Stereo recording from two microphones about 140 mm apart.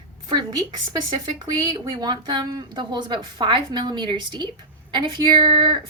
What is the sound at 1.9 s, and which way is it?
A woman's voice, 30° right (ahead or behind).